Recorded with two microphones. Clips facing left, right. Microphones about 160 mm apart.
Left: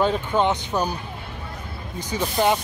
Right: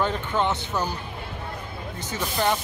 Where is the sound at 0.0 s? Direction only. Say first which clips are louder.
Left 4 dB; 15° left (ahead or behind).